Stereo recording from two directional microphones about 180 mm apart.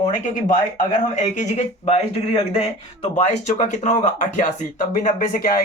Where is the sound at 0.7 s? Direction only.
45° left (ahead or behind).